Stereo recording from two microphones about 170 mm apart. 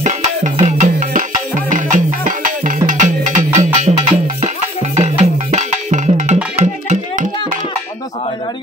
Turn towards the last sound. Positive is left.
turn(degrees=-45)  # may be behind; listen again after turning